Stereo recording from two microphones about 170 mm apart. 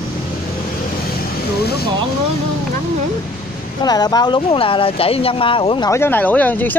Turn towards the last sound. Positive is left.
turn(degrees=10)  # may be behind; listen again after turning